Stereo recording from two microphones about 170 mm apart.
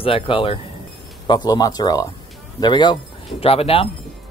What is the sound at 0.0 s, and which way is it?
Speech, 30° left (ahead or behind).